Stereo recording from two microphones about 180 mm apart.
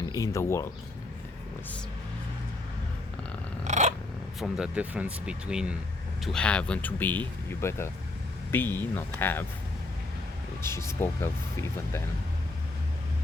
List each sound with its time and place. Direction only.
0.0 s speech: 20° left (ahead or behind)
3.6 s a sound: 40° right (ahead or behind)
4.4 s speech: 5° right (ahead or behind)
6.2 s speech: 5° left (ahead or behind)
10.6 s speech: 15° left (ahead or behind)